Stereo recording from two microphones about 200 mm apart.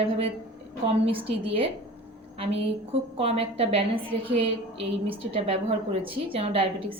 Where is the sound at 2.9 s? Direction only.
30° right (ahead or behind).